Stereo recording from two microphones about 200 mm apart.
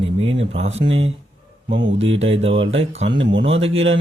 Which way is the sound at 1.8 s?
70° right (ahead or behind).